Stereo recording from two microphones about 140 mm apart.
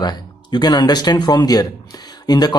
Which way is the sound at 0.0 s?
30° left (ahead or behind).